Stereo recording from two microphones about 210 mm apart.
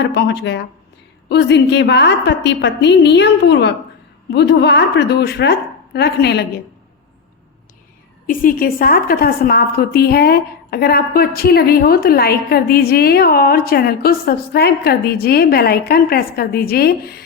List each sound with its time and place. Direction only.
0.0 s a woman's voice: 55° left (ahead or behind)
8.3 s a woman's voice: 40° left (ahead or behind)